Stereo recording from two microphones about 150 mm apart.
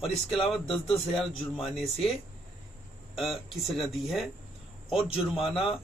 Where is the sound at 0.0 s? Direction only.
40° left (ahead or behind).